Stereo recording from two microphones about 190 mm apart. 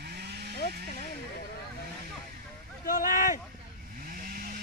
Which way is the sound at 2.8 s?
45° left (ahead or behind).